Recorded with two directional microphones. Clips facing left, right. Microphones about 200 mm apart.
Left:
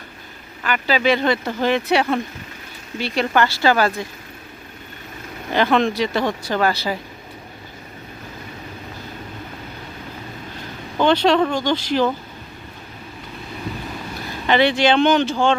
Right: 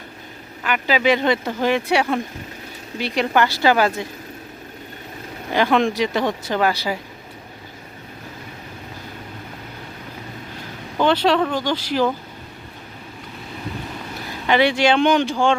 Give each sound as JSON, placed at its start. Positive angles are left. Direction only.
{"t": 0.6, "sound": "speech", "side_deg": -15}
{"t": 5.5, "sound": "speech", "side_deg": -10}
{"t": 10.9, "sound": "speech", "side_deg": -5}
{"t": 14.4, "sound": "speech", "side_deg": -10}